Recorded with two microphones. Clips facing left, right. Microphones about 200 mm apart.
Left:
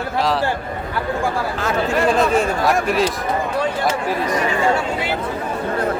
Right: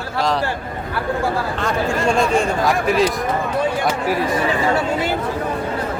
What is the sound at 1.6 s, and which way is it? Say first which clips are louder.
Speech: left 1 dB; 5° left (ahead or behind).